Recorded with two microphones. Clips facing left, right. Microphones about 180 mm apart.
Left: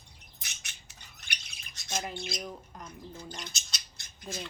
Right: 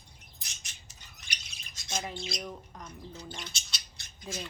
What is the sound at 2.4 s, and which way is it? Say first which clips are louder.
Speech: even; centre (ahead or behind).